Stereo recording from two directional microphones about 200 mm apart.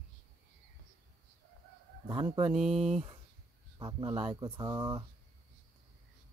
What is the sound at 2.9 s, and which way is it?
Speech, 30° right (ahead or behind).